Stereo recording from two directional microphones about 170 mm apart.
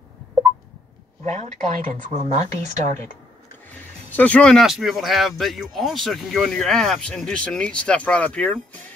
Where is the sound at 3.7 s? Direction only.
10° left (ahead or behind).